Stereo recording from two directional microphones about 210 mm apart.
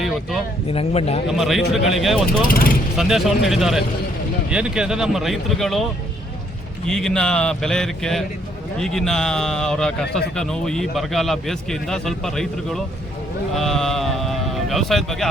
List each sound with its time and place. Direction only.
0.7 s speech: 30° left (ahead or behind)
1.3 s a man's voice: centre (ahead or behind)
2.5 s speech: 45° left (ahead or behind)
3.0 s a man's voice: centre (ahead or behind)